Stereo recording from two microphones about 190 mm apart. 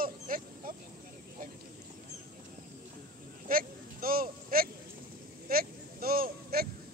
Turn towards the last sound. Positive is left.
turn(degrees=-55)  # may be behind; listen again after turning